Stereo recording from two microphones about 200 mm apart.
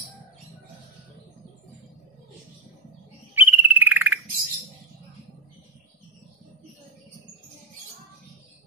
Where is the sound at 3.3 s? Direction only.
10° right (ahead or behind).